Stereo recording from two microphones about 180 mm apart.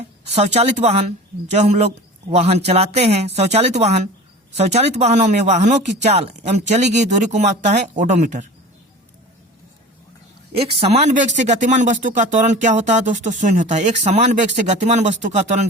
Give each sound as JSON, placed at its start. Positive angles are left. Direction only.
{"t": 0.3, "sound": "speech", "side_deg": -35}
{"t": 10.5, "sound": "speech", "side_deg": -35}